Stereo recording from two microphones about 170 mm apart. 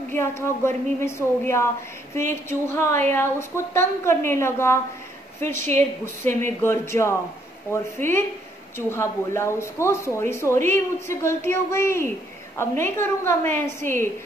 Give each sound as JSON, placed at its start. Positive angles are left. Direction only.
{"t": 0.1, "sound": "speech", "side_deg": 15}
{"t": 2.7, "sound": "speech", "side_deg": 15}